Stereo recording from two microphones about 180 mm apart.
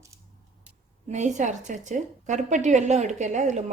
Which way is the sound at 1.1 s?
40° right (ahead or behind).